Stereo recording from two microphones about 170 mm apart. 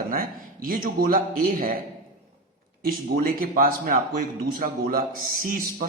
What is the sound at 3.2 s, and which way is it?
A man's voice, 55° right (ahead or behind).